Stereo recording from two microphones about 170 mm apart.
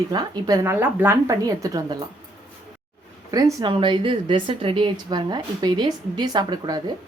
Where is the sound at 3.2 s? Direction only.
20° right (ahead or behind).